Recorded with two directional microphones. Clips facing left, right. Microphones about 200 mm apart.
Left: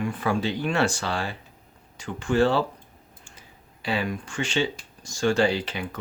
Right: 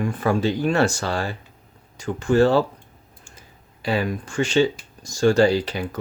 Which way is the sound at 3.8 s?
40° right (ahead or behind).